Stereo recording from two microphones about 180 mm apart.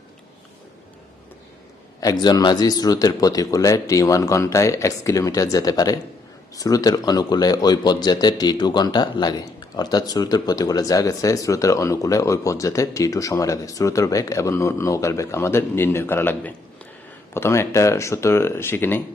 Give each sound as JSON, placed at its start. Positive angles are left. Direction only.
{"t": 2.0, "sound": "speech", "side_deg": 20}